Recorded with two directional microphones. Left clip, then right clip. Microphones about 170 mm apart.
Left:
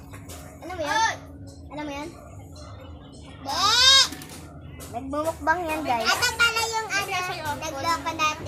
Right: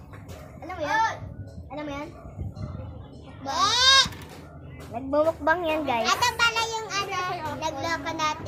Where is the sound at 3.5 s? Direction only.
15° right (ahead or behind).